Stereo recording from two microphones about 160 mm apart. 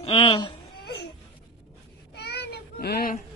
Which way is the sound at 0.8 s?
90° left.